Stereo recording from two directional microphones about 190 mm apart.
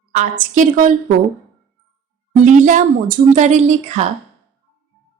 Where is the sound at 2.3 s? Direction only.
40° right (ahead or behind).